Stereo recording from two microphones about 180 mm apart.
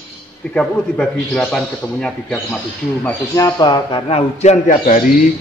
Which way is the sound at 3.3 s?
20° left (ahead or behind).